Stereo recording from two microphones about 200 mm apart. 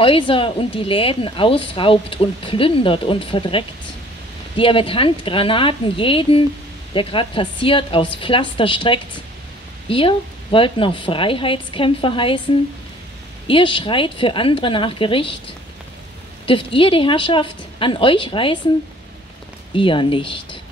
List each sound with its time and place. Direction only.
0.0 s speech: 25° left (ahead or behind)
13.5 s speech: 25° left (ahead or behind)
16.4 s speech: 25° left (ahead or behind)
19.7 s speech: 25° left (ahead or behind)